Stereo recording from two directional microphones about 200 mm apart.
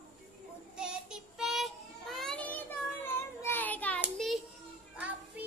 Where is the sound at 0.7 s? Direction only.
5° right (ahead or behind).